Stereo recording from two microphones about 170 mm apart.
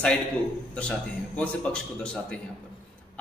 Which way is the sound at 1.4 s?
5° left (ahead or behind).